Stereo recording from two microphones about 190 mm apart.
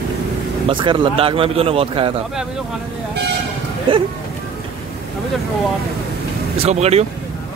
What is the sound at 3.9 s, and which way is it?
Speech, 30° right (ahead or behind).